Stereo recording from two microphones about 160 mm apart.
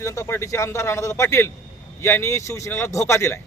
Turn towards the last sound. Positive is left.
turn(degrees=15)  # may be behind; listen again after turning